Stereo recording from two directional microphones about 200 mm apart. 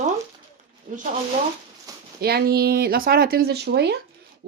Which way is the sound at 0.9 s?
40° right (ahead or behind).